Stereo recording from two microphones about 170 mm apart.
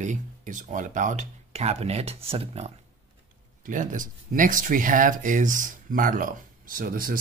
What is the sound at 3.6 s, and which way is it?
Speech, 50° right (ahead or behind).